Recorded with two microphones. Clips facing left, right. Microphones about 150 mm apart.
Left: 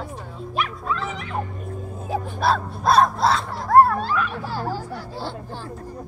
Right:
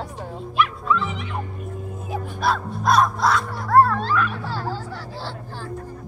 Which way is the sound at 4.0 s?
5° left (ahead or behind).